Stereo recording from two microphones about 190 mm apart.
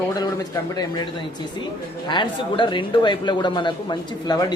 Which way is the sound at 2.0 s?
25° left (ahead or behind).